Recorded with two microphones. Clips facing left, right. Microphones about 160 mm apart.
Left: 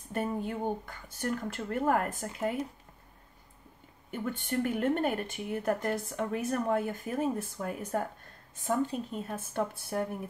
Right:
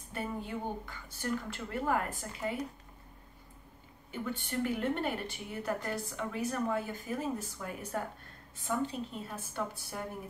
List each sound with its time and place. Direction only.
0.1 s speech: 50° left (ahead or behind)
4.1 s speech: 50° left (ahead or behind)